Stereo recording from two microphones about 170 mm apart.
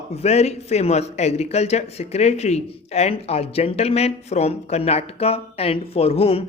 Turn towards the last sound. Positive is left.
turn(degrees=35)  # may be behind; listen again after turning